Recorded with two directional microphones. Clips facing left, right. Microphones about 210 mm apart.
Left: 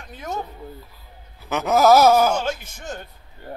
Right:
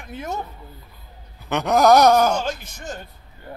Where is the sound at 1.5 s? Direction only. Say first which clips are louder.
Even; 5° left (ahead or behind).